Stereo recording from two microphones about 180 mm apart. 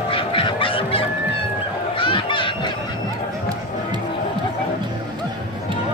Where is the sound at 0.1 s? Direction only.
30° left (ahead or behind).